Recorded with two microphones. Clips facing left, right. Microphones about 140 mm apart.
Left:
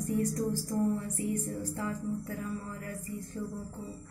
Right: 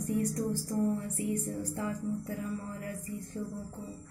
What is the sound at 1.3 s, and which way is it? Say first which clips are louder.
Music: right 1 dB; 15° right (ahead or behind).